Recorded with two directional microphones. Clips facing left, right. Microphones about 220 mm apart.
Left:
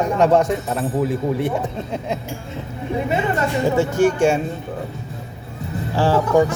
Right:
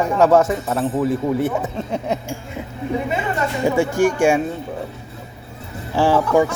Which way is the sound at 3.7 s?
10° right (ahead or behind).